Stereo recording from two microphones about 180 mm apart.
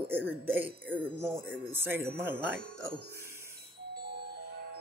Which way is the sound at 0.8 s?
10° left (ahead or behind).